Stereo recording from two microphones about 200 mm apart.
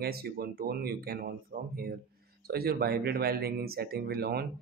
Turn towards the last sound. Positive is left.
turn(degrees=-50)  # may be behind; listen again after turning